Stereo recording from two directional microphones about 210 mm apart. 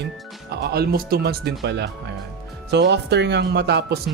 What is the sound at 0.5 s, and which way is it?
Speech, 50° right (ahead or behind).